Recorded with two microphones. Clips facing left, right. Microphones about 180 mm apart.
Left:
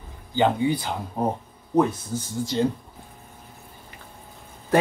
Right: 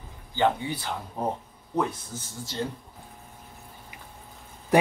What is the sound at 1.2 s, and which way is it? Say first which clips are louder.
Speech: left 4 dB; 50° left (ahead or behind).